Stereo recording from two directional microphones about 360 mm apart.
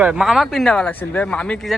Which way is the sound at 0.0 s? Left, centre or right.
Centre.